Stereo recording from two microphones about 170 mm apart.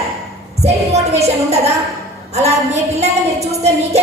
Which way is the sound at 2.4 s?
40° right (ahead or behind).